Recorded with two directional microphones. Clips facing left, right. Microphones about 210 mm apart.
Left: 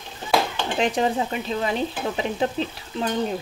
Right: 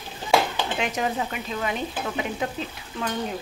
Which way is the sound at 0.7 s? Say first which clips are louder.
Left 6 dB; 30° left (ahead or behind).